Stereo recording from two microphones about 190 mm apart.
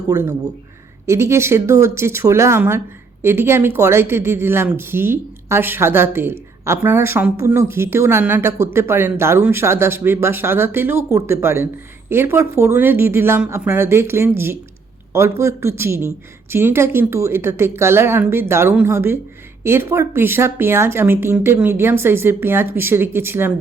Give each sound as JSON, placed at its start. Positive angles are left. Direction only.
{"t": 0.1, "sound": "speech", "side_deg": -15}